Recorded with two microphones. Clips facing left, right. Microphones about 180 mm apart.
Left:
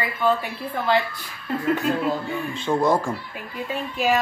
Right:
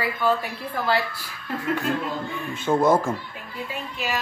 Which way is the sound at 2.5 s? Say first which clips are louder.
Right 2 dB; 5° right (ahead or behind).